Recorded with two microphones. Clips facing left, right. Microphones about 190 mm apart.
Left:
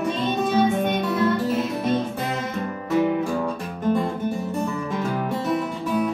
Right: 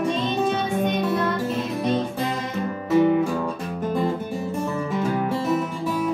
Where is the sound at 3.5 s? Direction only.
5° right (ahead or behind).